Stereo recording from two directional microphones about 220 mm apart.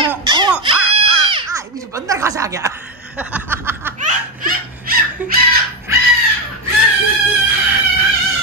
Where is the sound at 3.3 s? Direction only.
10° right (ahead or behind).